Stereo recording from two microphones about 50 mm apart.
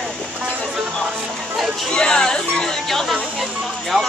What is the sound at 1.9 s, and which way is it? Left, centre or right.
Chatter, centre.